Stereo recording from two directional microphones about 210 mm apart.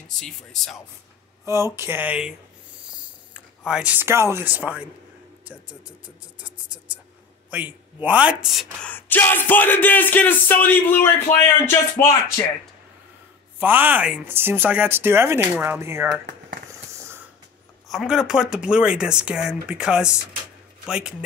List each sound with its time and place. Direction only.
0.1 s speech: centre (ahead or behind)
1.4 s speech: 15° right (ahead or behind)
3.3 s speech: 5° right (ahead or behind)
8.9 s music: 10° left (ahead or behind)
13.6 s speech: 10° right (ahead or behind)
17.8 s speech: centre (ahead or behind)